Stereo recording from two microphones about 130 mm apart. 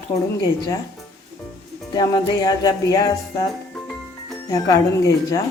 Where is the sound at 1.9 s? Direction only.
30° left (ahead or behind).